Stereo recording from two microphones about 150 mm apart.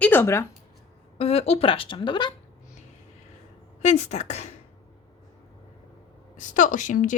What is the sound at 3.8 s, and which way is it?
Speech, 50° left (ahead or behind).